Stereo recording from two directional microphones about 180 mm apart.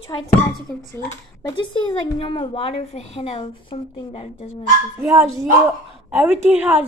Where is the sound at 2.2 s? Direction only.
30° left (ahead or behind).